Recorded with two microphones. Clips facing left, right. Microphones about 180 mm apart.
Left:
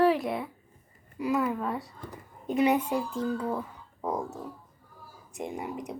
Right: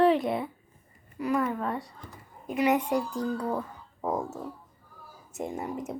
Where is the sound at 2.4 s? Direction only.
30° left (ahead or behind).